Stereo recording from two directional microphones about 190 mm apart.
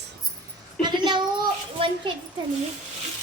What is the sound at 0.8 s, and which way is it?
A woman's voice, 25° right (ahead or behind).